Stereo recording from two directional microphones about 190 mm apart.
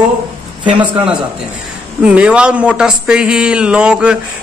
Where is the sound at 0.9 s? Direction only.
25° right (ahead or behind).